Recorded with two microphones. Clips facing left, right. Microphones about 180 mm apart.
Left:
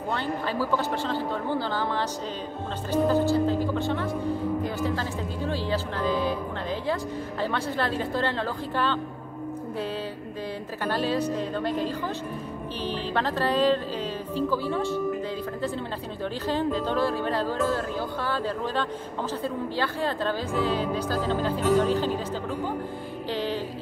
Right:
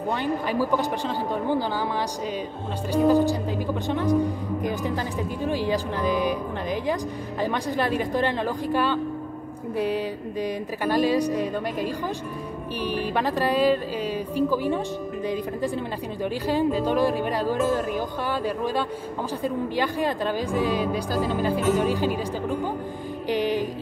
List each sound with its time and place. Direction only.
0.1 s speech: 15° right (ahead or behind)
2.9 s speech: 15° right (ahead or behind)
16.4 s speech: 10° right (ahead or behind)
23.2 s music: 15° right (ahead or behind)